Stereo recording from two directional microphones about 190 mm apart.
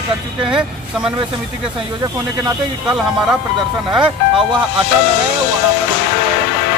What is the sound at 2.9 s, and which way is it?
Speech, 5° right (ahead or behind).